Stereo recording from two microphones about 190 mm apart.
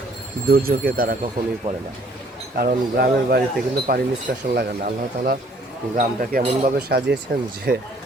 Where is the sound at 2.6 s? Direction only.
50° right (ahead or behind).